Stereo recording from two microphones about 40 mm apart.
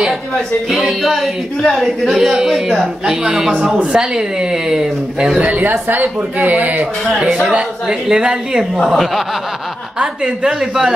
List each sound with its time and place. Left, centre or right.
0.7 s a woman's voice: centre
3.1 s a woman's voice: centre
5.4 s speech: right
8.1 s speech: centre
8.8 s speech: centre
9.9 s speech: right